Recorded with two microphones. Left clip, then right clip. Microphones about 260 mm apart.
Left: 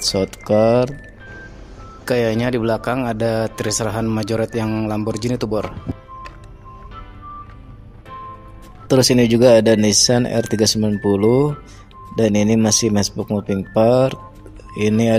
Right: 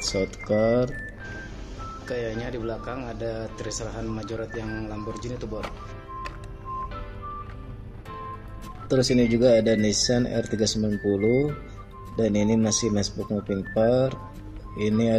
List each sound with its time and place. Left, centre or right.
0.1 s speech: left
2.0 s speech: left
8.8 s speech: left